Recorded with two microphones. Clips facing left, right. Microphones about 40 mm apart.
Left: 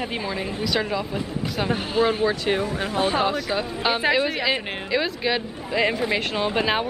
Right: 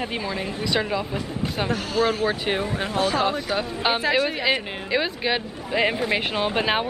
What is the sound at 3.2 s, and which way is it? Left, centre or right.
Speech, centre.